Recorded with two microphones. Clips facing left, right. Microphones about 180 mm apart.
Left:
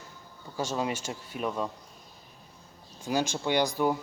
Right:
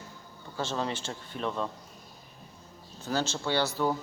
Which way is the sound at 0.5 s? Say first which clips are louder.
Left 2 dB; 10° left (ahead or behind).